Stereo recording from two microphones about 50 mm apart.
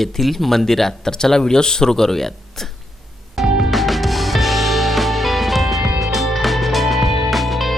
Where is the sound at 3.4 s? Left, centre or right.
Centre.